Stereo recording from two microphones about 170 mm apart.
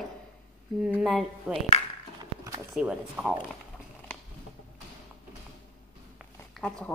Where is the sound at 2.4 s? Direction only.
20° right (ahead or behind).